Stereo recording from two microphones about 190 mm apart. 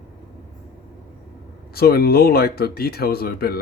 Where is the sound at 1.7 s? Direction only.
55° left (ahead or behind).